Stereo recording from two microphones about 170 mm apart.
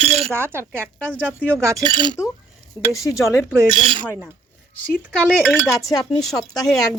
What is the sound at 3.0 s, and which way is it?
Speech, 20° left (ahead or behind).